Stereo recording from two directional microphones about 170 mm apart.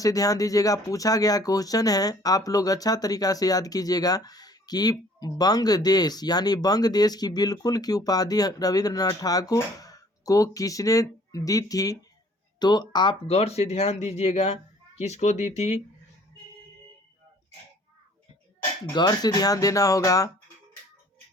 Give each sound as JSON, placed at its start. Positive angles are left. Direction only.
{"t": 0.0, "sound": "speech", "side_deg": 20}
{"t": 18.9, "sound": "speech", "side_deg": 25}